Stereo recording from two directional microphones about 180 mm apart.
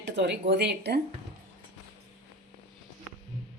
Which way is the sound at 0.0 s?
70° right (ahead or behind).